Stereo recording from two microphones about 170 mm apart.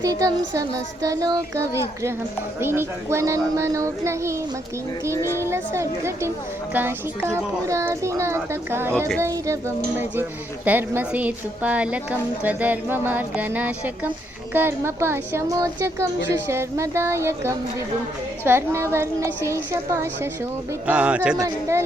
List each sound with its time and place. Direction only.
0.0 s a woman's voice: 20° right (ahead or behind)
5.1 s speech: 15° left (ahead or behind)
5.5 s a woman's voice: 15° right (ahead or behind)